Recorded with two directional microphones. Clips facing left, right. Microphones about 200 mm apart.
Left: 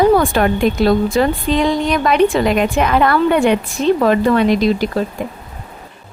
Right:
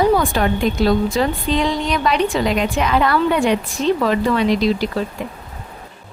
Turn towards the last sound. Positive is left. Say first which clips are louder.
# left 3 dB
turn(degrees=50)  # may be behind; listen again after turning